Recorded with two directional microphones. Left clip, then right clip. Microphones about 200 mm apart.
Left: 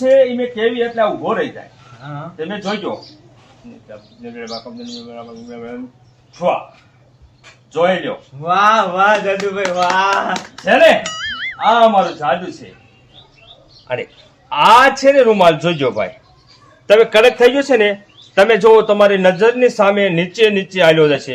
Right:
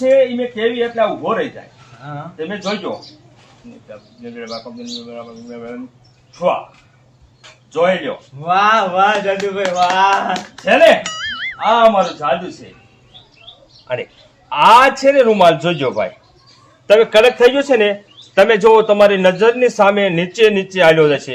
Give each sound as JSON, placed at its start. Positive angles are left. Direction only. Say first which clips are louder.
{"t": 0.0, "sound": "a man's voice", "louder": "left 1 dB", "side_deg": -5}
{"t": 4.2, "sound": "a man's voice", "louder": "even", "side_deg": -10}
{"t": 7.7, "sound": "a man's voice", "louder": "even", "side_deg": -10}
{"t": 8.4, "sound": "speech", "louder": "left 1 dB", "side_deg": 20}
{"t": 10.7, "sound": "speech", "louder": "even", "side_deg": 0}
{"t": 13.8, "sound": "a man's voice", "louder": "even", "side_deg": -5}